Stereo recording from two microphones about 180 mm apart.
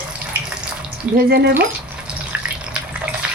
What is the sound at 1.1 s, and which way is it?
Speech, 60° right (ahead or behind).